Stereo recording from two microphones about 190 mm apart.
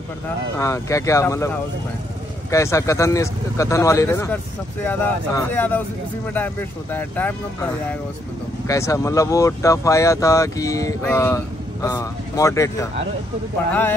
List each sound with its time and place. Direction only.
0.6 s speech: 15° left (ahead or behind)
8.6 s speech: 15° left (ahead or behind)